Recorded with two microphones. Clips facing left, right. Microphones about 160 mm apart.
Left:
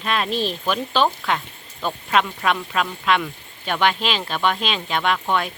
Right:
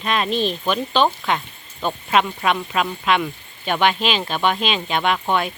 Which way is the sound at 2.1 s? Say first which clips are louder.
Right 1 dB; 10° right (ahead or behind).